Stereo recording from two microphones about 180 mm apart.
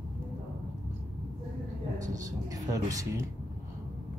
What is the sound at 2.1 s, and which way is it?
Speech, 20° right (ahead or behind).